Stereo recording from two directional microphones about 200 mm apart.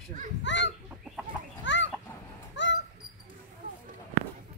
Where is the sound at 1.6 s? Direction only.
65° left (ahead or behind).